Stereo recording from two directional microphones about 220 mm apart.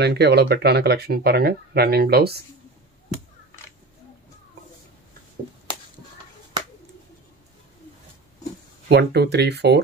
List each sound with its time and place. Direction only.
0.0 s speech: 50° right (ahead or behind)
8.8 s speech: 50° right (ahead or behind)